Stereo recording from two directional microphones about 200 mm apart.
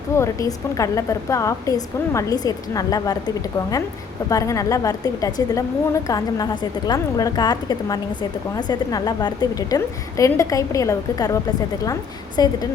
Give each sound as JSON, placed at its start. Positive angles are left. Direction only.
{"t": 0.2, "sound": "a woman's voice", "side_deg": 15}
{"t": 12.4, "sound": "a woman's voice", "side_deg": 20}